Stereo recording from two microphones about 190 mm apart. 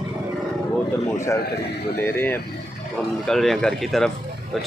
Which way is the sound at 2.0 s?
10° left (ahead or behind).